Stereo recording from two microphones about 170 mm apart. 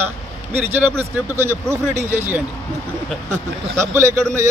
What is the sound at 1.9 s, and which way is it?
Speech, 45° right (ahead or behind).